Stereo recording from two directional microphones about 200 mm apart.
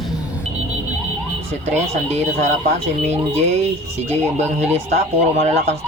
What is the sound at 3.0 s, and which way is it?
Speech, 35° right (ahead or behind).